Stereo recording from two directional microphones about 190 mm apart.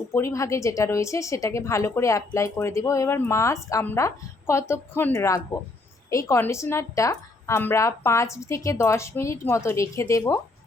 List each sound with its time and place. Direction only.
0.1 s a woman's voice: 15° left (ahead or behind)